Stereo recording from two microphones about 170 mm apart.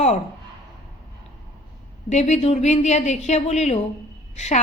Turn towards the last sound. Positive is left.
turn(degrees=40)  # may be behind; listen again after turning